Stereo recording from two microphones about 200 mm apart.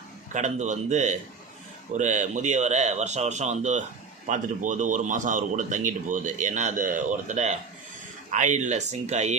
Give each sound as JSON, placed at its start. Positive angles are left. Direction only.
{"t": 0.3, "sound": "speech", "side_deg": -35}